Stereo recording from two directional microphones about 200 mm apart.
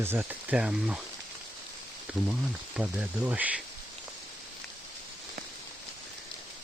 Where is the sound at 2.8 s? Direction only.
5° right (ahead or behind).